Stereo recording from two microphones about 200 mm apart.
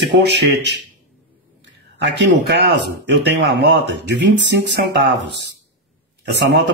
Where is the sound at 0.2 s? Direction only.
60° right (ahead or behind).